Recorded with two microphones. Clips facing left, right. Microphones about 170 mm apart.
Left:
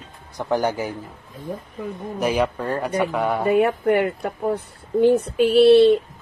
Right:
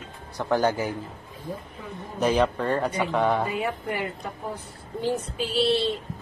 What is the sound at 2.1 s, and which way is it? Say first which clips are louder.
Speech: even; 10° left (ahead or behind).